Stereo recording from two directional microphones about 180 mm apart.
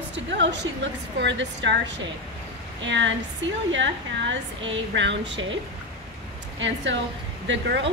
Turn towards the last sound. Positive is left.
turn(degrees=-80)